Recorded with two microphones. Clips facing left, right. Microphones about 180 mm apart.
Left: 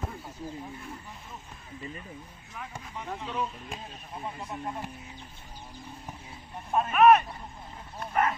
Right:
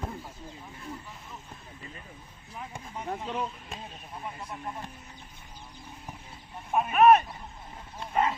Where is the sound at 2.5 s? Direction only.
30° right (ahead or behind).